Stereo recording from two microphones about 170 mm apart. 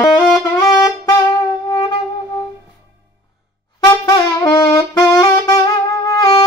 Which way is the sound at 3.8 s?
20° left (ahead or behind).